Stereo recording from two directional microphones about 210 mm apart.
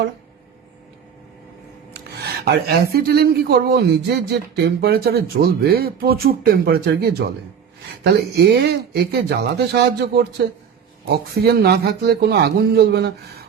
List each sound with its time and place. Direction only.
2.1 s speech: 50° right (ahead or behind)